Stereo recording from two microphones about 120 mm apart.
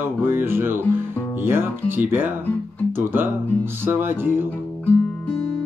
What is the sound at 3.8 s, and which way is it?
Mantra, 20° right (ahead or behind).